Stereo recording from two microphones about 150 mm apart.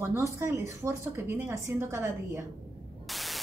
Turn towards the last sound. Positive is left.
turn(degrees=0)  # may be behind; listen again after turning